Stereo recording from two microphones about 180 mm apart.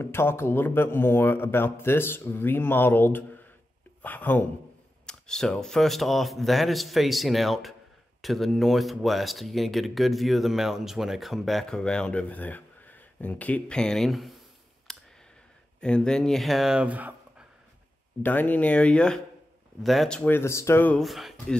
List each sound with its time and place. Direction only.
0.0 s a man's voice: 15° left (ahead or behind)
14.9 s clicking: centre (ahead or behind)
15.8 s speech: 5° left (ahead or behind)
18.2 s a man's voice: 10° left (ahead or behind)